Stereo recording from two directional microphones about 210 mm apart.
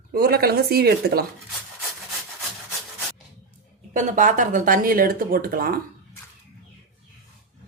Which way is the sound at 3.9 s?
35° right (ahead or behind).